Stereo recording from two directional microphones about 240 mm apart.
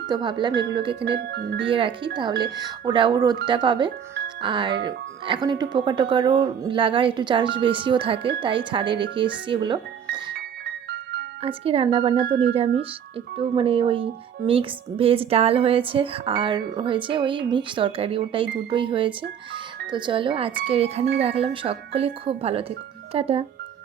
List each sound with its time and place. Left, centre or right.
0.1 s speech: centre
0.9 s speech: right
1.6 s speech: right
11.4 s speech: right
12.1 s speech: right
12.4 s speech: right